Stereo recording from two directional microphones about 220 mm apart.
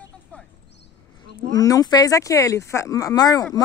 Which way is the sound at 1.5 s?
15° left (ahead or behind).